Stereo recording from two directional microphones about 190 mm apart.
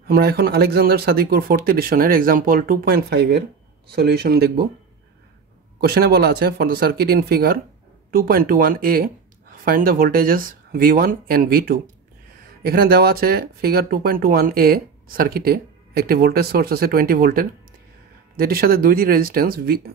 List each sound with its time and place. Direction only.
0.0 s speech: 55° right (ahead or behind)
5.8 s speech: 55° right (ahead or behind)